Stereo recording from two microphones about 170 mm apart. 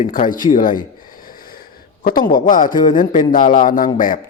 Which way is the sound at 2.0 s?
55° left (ahead or behind).